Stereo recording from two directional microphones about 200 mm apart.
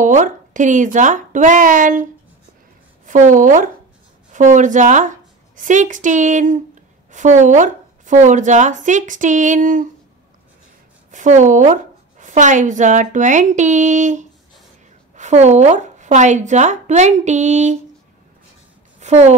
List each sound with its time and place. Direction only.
0.0 s a woman's voice: 40° right (ahead or behind)
3.1 s a woman's voice: 40° right (ahead or behind)
11.1 s a woman's voice: 40° right (ahead or behind)
18.9 s a sound: 35° right (ahead or behind)